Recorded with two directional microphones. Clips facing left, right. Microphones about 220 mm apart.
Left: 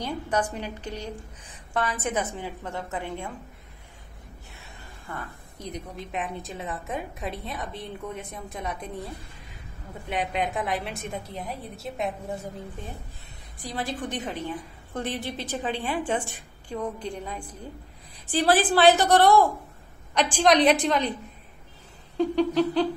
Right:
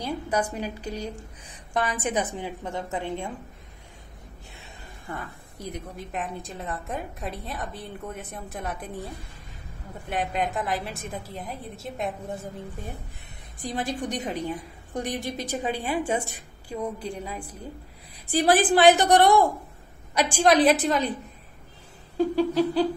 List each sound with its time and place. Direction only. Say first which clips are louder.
0.0 s a woman's voice: even; 10° right (ahead or behind)
5.7 s a woman's voice: even; centre (ahead or behind)
10.0 s a woman's voice: even; centre (ahead or behind)
13.7 s a woman's voice: right 2 dB; 20° right (ahead or behind)
22.1 s a sound: even; 5° right (ahead or behind)